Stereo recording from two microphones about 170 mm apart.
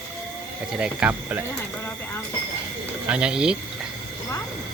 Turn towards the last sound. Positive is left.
turn(degrees=-5)  # may be behind; listen again after turning